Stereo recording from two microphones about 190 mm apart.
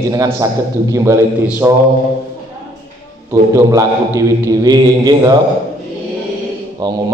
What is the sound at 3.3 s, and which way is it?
A man's voice, 15° right (ahead or behind).